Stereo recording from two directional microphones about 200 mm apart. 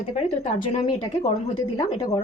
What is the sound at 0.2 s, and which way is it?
Speech, 30° left (ahead or behind).